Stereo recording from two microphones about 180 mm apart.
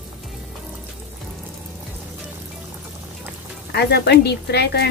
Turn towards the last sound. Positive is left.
turn(degrees=65)  # may be behind; listen again after turning